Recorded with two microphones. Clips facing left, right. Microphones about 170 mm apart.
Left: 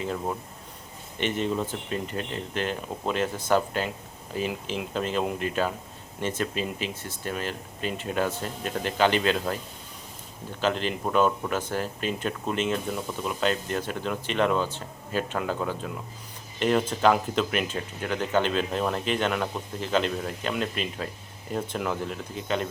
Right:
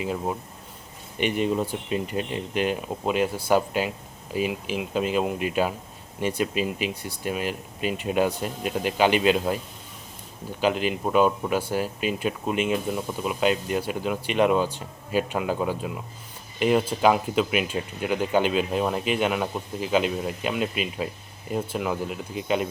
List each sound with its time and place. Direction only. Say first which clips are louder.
0.0 s speech: right 2 dB; 10° right (ahead or behind)
10.6 s speech: right 3 dB; 10° right (ahead or behind)